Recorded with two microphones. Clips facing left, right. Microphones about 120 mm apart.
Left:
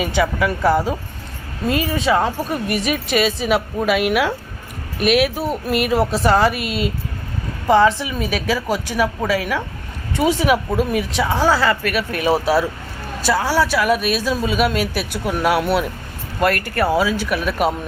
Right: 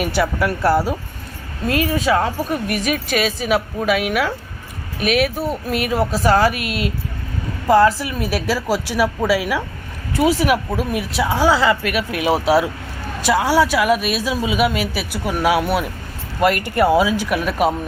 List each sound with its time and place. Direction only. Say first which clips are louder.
0.2 s speech: left 1 dB; 5° right (ahead or behind)